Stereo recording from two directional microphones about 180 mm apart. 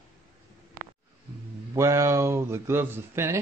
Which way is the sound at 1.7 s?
15° right (ahead or behind).